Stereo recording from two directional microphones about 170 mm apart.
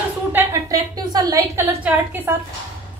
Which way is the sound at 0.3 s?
15° right (ahead or behind).